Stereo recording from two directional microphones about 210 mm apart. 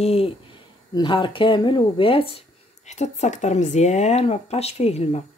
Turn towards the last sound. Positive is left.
turn(degrees=30)  # may be behind; listen again after turning